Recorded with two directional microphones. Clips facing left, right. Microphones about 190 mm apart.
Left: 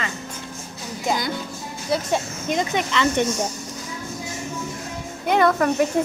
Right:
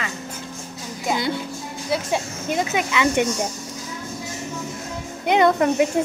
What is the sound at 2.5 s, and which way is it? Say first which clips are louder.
Speech: even; 10° right (ahead or behind).